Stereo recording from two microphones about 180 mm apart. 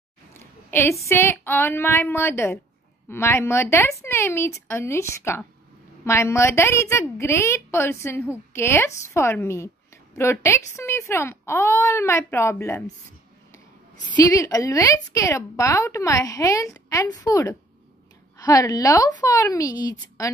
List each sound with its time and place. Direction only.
0.3 s a sound: 15° left (ahead or behind)
1.0 s a woman's voice: 15° left (ahead or behind)
14.2 s a woman's voice: 20° left (ahead or behind)